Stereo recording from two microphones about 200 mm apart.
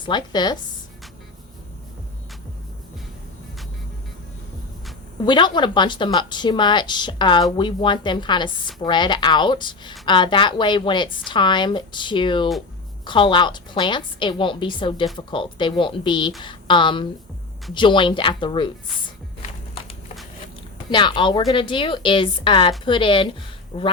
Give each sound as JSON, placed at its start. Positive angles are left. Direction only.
{"t": 0.0, "sound": "a woman's voice", "side_deg": 20}
{"t": 5.2, "sound": "a woman's voice", "side_deg": 20}
{"t": 20.9, "sound": "a woman's voice", "side_deg": 25}
{"t": 23.7, "sound": "speech", "side_deg": 35}